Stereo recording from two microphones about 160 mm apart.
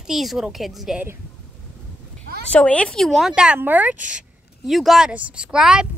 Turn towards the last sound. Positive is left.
turn(degrees=-5)  # may be behind; listen again after turning